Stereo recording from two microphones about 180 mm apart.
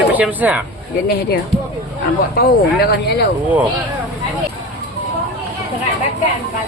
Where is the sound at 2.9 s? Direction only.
65° left (ahead or behind).